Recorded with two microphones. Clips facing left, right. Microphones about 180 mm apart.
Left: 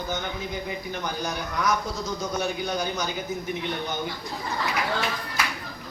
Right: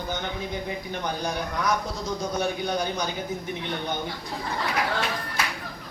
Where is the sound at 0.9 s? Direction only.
30° right (ahead or behind).